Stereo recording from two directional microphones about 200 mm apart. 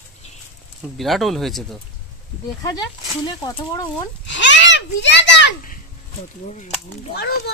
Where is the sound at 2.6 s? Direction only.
20° left (ahead or behind).